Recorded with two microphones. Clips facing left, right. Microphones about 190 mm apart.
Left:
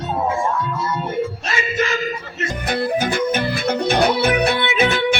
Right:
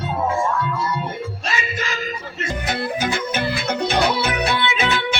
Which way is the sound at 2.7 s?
55° left (ahead or behind).